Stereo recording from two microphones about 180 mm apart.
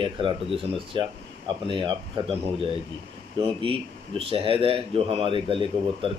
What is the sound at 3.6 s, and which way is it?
Speech, 30° right (ahead or behind).